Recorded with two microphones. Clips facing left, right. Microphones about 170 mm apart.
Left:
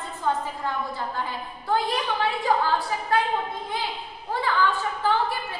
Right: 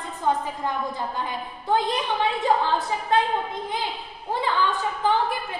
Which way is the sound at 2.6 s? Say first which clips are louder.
Right 1 dB; 20° right (ahead or behind).